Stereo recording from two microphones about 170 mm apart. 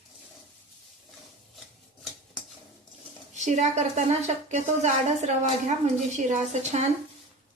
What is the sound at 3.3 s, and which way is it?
A woman's voice, 45° right (ahead or behind).